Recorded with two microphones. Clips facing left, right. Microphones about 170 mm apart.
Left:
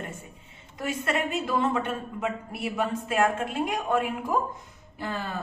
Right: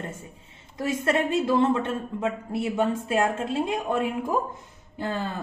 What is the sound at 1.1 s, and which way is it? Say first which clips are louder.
Speech: right 5 dB; 25° right (ahead or behind).